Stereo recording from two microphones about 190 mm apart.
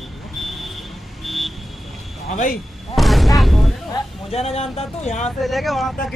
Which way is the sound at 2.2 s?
45° left (ahead or behind).